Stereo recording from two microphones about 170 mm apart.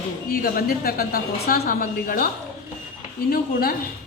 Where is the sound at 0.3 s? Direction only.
60° left (ahead or behind).